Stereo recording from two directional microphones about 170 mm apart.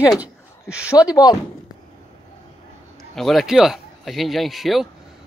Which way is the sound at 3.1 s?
Centre (ahead or behind).